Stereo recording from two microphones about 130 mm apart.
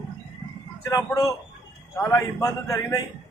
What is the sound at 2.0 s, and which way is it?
A man's voice, 25° left (ahead or behind).